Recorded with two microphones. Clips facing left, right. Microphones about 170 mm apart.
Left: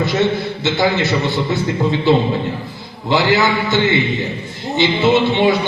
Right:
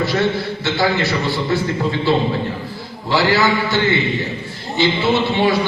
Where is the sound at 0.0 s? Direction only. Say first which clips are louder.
Left 2 dB; 20° left (ahead or behind).